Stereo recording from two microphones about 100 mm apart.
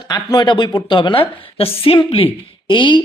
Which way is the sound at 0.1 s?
45° left (ahead or behind).